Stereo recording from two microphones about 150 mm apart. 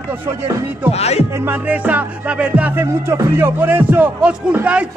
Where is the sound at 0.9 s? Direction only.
45° left (ahead or behind).